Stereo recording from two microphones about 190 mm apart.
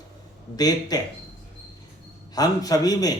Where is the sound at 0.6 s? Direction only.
20° left (ahead or behind).